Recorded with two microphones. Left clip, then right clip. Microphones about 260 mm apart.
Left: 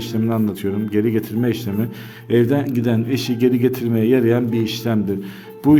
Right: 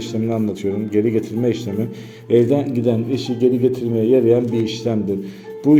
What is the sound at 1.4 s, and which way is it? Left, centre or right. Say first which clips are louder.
Speech: right 2 dB; left.